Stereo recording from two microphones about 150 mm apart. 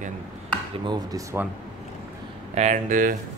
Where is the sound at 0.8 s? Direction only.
25° right (ahead or behind).